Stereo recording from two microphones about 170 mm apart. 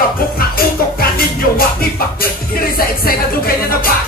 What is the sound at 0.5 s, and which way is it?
Music, 60° left (ahead or behind).